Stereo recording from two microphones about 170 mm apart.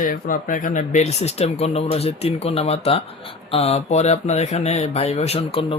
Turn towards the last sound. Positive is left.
turn(degrees=35)  # may be behind; listen again after turning